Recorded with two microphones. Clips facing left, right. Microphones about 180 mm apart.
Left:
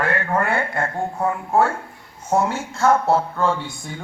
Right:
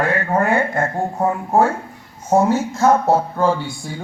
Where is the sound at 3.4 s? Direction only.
35° right (ahead or behind).